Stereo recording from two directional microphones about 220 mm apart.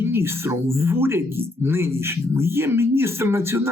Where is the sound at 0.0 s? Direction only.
10° right (ahead or behind).